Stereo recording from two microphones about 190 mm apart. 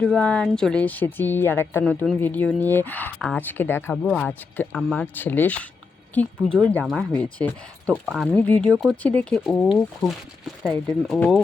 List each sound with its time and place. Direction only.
0.0 s a woman's voice: 5° left (ahead or behind)